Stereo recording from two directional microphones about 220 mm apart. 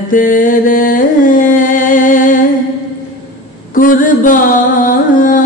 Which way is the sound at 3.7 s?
40° left (ahead or behind).